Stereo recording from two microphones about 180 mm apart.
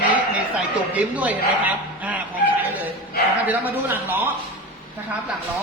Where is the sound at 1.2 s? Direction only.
10° right (ahead or behind).